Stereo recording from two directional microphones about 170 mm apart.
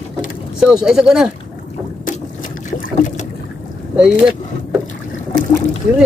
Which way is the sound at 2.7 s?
45° left (ahead or behind).